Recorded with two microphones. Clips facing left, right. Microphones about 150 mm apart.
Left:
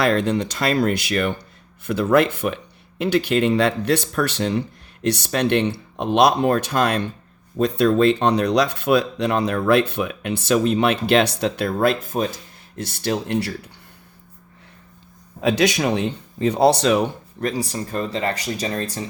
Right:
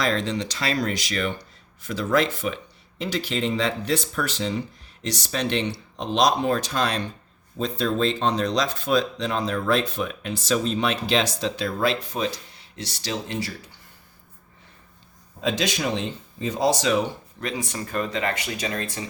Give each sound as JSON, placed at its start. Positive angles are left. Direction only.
{"t": 0.0, "sound": "speech", "side_deg": 60}
{"t": 7.6, "sound": "speech", "side_deg": 65}
{"t": 15.4, "sound": "speech", "side_deg": 65}
{"t": 17.4, "sound": "speech", "side_deg": 35}